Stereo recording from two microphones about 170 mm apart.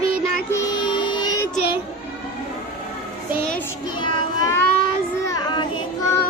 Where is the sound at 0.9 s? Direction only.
30° left (ahead or behind).